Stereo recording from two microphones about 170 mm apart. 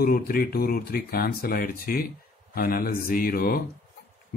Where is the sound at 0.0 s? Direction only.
60° left (ahead or behind).